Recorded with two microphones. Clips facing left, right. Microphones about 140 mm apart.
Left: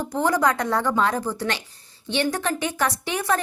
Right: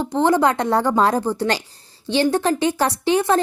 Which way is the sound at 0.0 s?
25° right (ahead or behind).